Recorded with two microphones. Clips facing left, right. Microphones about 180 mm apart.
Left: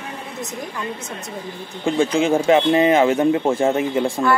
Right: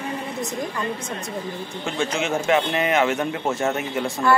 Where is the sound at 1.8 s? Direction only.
30° left (ahead or behind).